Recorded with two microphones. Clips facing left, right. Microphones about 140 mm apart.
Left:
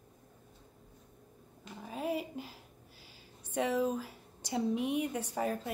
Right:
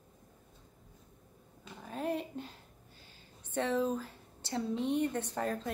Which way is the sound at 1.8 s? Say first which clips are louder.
Even; 5° left (ahead or behind).